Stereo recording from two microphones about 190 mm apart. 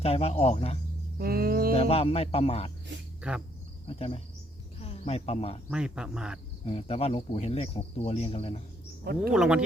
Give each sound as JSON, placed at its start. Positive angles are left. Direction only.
{"t": 0.0, "sound": "speech", "side_deg": 30}
{"t": 1.2, "sound": "a sound", "side_deg": -55}
{"t": 1.7, "sound": "speech", "side_deg": 30}
{"t": 3.2, "sound": "speech", "side_deg": -5}
{"t": 3.8, "sound": "speech", "side_deg": 35}
{"t": 5.7, "sound": "speech", "side_deg": -5}
{"t": 6.7, "sound": "speech", "side_deg": 30}
{"t": 9.3, "sound": "speech", "side_deg": -5}